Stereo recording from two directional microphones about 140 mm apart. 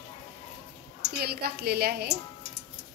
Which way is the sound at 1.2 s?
90° right.